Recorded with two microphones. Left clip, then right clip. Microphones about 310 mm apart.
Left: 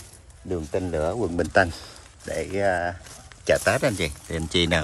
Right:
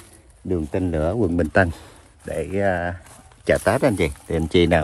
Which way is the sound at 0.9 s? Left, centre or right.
Right.